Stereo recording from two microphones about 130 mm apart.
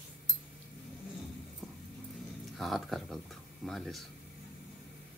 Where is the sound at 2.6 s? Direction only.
Centre (ahead or behind).